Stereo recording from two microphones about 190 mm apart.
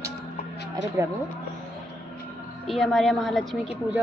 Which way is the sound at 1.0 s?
15° right (ahead or behind).